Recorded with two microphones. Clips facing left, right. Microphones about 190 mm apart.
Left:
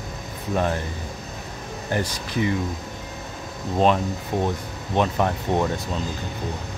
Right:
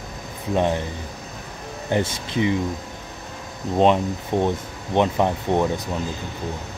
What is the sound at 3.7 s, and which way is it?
Speech, 20° right (ahead or behind).